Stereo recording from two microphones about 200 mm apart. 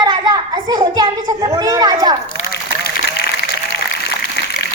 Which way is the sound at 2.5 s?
50° left (ahead or behind).